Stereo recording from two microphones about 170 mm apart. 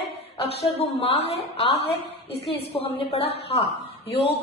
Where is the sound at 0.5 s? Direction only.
35° left (ahead or behind).